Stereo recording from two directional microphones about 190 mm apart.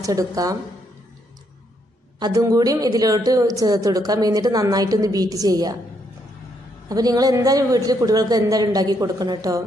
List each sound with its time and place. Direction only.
0.0 s speech: 20° right (ahead or behind)
2.1 s a woman's voice: 20° right (ahead or behind)
6.9 s a woman's voice: 20° right (ahead or behind)